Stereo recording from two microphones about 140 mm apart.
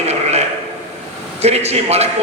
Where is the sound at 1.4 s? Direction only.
50° right (ahead or behind).